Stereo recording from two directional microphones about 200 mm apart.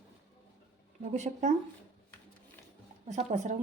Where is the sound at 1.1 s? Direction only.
35° right (ahead or behind).